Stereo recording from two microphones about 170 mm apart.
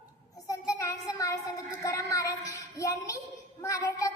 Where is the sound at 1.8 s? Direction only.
20° left (ahead or behind).